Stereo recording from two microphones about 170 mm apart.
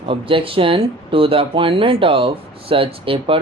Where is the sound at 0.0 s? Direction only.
30° right (ahead or behind).